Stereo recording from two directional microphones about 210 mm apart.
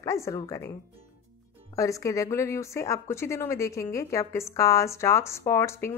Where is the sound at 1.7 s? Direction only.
15° left (ahead or behind).